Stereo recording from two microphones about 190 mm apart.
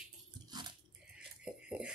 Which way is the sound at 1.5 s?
5° right (ahead or behind).